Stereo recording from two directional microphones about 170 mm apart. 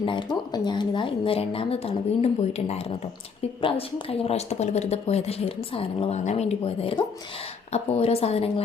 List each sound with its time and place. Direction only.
0.0 s speech: 30° left (ahead or behind)